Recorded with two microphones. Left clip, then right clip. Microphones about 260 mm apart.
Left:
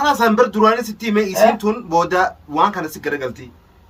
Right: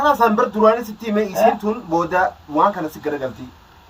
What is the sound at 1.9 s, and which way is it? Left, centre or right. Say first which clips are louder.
Speech: left 2 dB; centre.